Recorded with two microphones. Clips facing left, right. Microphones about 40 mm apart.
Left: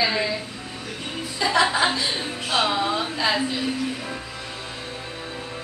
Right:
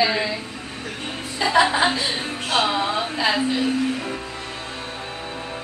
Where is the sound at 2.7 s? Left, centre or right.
Centre.